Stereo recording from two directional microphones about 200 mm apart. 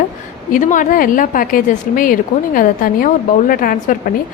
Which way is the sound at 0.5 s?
40° left (ahead or behind).